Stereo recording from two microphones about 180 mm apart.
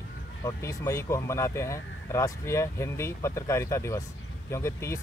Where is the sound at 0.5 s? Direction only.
15° left (ahead or behind).